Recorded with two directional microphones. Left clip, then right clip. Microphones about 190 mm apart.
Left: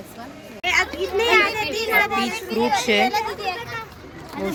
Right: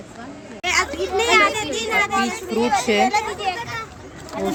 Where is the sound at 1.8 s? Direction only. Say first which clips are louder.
Even; centre (ahead or behind).